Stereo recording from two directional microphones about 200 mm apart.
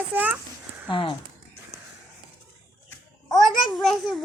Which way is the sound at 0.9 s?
25° left (ahead or behind).